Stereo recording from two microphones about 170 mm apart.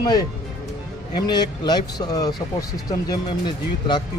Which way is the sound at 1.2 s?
25° left (ahead or behind).